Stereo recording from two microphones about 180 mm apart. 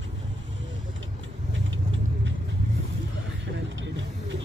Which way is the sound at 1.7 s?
90° right.